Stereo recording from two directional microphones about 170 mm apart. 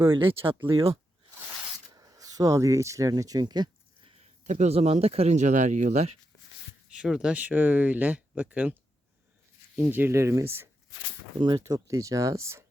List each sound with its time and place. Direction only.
0.1 s speech: 30° right (ahead or behind)
2.0 s speech: 20° right (ahead or behind)
4.4 s speech: 45° right (ahead or behind)
6.9 s speech: 5° right (ahead or behind)